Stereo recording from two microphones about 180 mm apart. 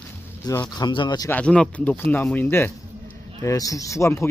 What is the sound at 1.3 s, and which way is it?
Speech, 5° left (ahead or behind).